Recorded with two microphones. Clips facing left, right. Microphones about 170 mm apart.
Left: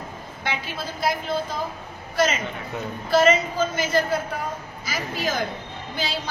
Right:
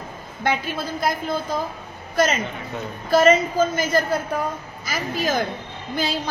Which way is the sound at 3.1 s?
45° right (ahead or behind).